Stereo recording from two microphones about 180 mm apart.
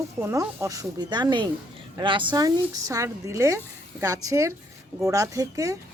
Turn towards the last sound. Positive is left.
turn(degrees=-15)  # may be behind; listen again after turning